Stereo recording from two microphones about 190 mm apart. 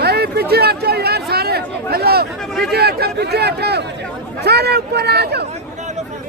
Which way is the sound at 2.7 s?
55° right (ahead or behind).